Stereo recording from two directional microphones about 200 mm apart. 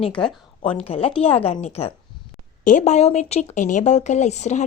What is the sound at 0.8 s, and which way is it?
A woman's voice, 30° left (ahead or behind).